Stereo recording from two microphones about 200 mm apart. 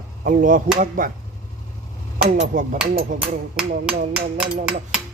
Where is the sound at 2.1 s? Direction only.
40° right (ahead or behind).